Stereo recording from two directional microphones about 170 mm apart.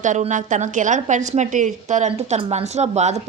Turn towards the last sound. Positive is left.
turn(degrees=-40)  # may be behind; listen again after turning